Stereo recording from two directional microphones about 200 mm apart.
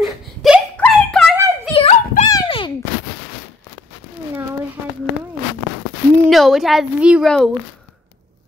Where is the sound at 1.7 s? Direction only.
30° left (ahead or behind).